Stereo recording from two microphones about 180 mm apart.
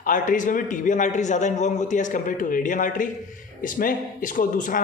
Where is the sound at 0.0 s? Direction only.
45° left (ahead or behind).